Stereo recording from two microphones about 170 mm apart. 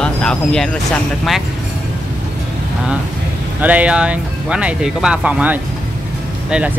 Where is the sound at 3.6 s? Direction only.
10° right (ahead or behind).